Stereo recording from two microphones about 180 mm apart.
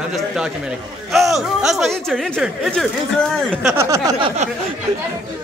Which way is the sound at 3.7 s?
15° right (ahead or behind).